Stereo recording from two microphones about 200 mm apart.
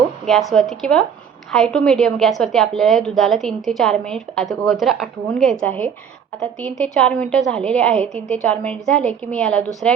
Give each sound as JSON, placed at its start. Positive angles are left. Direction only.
{"t": 0.3, "sound": "a woman's voice", "side_deg": 0}